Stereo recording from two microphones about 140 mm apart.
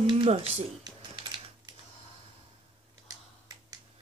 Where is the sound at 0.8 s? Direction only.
30° right (ahead or behind).